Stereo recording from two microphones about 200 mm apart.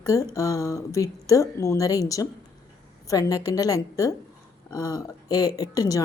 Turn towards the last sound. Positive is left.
turn(degrees=20)  # may be behind; listen again after turning